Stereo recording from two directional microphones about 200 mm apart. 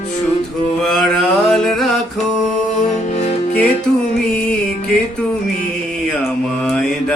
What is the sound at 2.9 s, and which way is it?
Music, 35° left (ahead or behind).